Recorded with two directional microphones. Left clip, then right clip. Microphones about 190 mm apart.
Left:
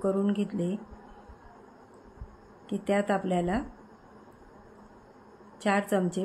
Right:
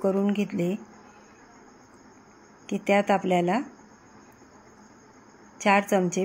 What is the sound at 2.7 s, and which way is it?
Speech, 20° right (ahead or behind).